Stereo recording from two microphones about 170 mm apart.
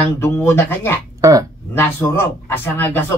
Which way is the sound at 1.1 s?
20° right (ahead or behind).